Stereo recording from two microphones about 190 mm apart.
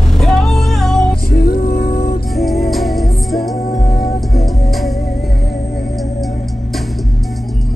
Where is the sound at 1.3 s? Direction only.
55° left (ahead or behind).